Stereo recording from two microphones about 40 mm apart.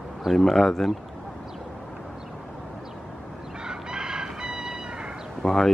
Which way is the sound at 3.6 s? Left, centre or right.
Centre.